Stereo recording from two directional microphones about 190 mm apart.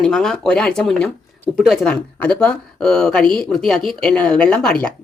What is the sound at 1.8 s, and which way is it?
Speech, 5° left (ahead or behind).